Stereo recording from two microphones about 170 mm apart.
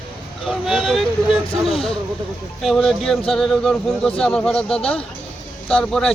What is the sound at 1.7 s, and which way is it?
Speech, 35° left (ahead or behind).